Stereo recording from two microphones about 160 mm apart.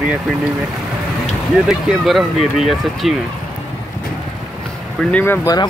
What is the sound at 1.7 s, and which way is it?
Speech, centre (ahead or behind).